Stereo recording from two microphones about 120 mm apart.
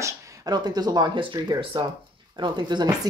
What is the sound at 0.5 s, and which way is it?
Speech, 35° right (ahead or behind).